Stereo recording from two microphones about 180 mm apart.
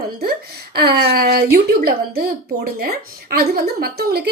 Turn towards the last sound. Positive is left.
turn(degrees=-60)  # may be behind; listen again after turning